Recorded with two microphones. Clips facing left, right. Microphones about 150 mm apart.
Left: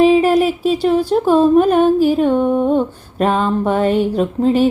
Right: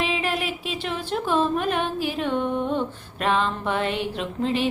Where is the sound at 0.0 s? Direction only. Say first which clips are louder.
Left 15 dB; 40° left (ahead or behind).